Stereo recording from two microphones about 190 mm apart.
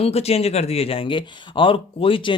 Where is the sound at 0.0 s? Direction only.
30° left (ahead or behind).